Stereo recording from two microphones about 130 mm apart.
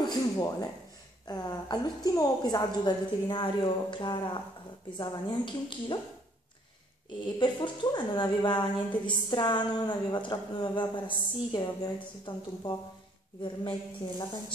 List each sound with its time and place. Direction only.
0.0 s a sound: 30° left (ahead or behind)
1.2 s a woman's voice: 30° left (ahead or behind)
7.3 s a woman's voice: 35° left (ahead or behind)